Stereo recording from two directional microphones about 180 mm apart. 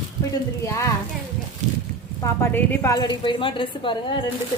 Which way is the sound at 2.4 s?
10° left (ahead or behind).